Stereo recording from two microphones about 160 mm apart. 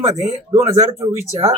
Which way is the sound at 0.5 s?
20° right (ahead or behind).